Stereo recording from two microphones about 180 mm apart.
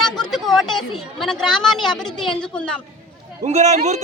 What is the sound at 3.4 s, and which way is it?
Speech, 40° right (ahead or behind).